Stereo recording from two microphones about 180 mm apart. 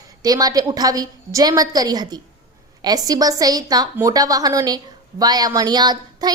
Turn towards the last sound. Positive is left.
turn(degrees=-25)  # may be behind; listen again after turning